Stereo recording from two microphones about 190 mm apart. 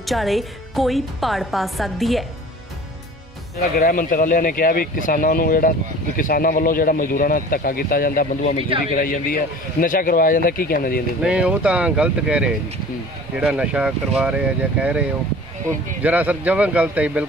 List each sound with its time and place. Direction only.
0.0 s a woman's voice: centre (ahead or behind)
3.7 s speech: 50° left (ahead or behind)
11.2 s a woman's voice: 5° right (ahead or behind)